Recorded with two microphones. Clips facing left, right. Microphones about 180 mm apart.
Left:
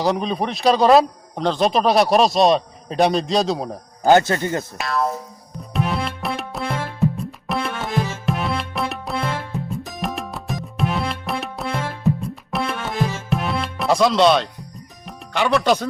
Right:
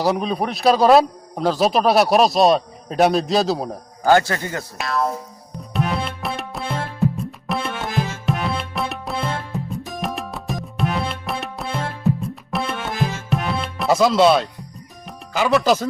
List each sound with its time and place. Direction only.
0.0 s speech: centre (ahead or behind)
4.0 s speech: 20° left (ahead or behind)
4.8 s speech: centre (ahead or behind)
5.7 s music: centre (ahead or behind)
15.3 s speech: 5° right (ahead or behind)